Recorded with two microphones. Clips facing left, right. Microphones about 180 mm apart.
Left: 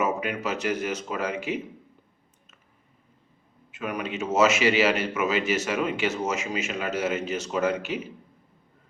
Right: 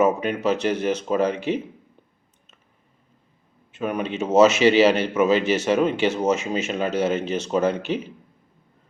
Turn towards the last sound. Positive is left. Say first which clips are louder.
# right 4 dB
turn(degrees=-30)  # may be behind; listen again after turning